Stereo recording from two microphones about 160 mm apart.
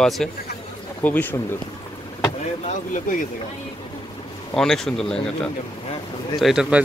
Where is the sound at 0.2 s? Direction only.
5° left (ahead or behind).